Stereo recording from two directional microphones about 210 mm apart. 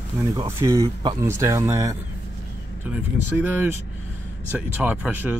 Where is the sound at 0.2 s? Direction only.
15° right (ahead or behind).